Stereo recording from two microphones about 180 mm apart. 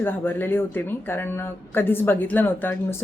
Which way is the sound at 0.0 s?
10° left (ahead or behind).